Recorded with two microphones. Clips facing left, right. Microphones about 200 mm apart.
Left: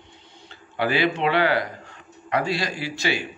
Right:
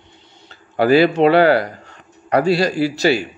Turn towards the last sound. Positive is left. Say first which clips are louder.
# right 10 dB
turn(degrees=-40)  # may be behind; listen again after turning